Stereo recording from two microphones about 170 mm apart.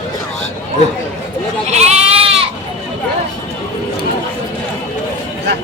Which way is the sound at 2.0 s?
35° right (ahead or behind).